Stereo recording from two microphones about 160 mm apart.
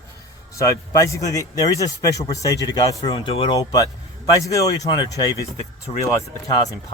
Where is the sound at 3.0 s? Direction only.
35° left (ahead or behind).